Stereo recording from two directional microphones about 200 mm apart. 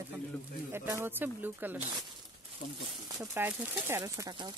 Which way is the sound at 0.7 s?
10° right (ahead or behind).